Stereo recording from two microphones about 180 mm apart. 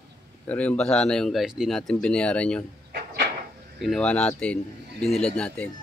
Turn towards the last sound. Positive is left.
turn(degrees=5)  # may be behind; listen again after turning